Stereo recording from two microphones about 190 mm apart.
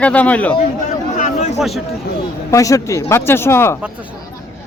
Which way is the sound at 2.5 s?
15° left (ahead or behind).